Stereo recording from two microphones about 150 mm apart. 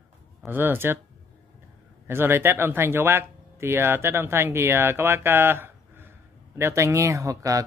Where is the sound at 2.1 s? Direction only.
15° right (ahead or behind).